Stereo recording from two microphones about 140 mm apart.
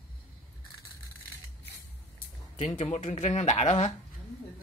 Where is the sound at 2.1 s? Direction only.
60° left (ahead or behind).